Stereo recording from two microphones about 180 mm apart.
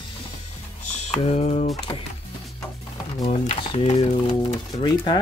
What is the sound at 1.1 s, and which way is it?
Speech, 40° left (ahead or behind).